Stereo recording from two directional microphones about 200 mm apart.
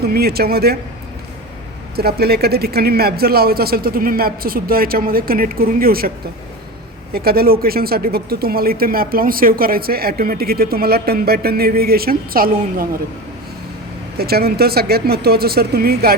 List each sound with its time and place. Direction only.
0.0 s speech: 50° right (ahead or behind)
2.0 s speech: 50° right (ahead or behind)
7.1 s speech: 50° right (ahead or behind)
14.2 s speech: 50° right (ahead or behind)